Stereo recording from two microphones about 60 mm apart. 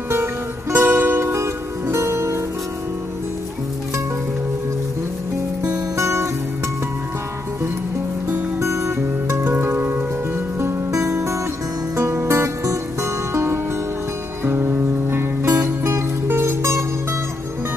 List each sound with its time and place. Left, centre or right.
0.1 s music: right
5.9 s music: right
8.5 s music: right
9.4 s music: right
10.6 s music: right